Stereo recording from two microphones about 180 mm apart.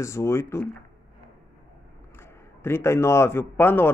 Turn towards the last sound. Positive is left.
turn(degrees=10)  # may be behind; listen again after turning